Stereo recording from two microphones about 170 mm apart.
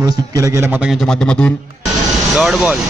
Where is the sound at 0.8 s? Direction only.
Centre (ahead or behind).